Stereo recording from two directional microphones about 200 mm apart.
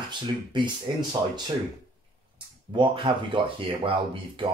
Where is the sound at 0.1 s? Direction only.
25° right (ahead or behind).